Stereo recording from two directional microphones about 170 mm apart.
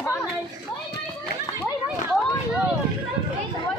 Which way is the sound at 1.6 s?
10° right (ahead or behind).